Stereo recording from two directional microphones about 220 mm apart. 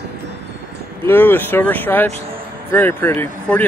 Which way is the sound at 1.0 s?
10° left (ahead or behind).